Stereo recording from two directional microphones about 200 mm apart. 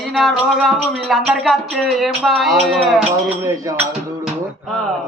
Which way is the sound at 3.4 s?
15° right (ahead or behind).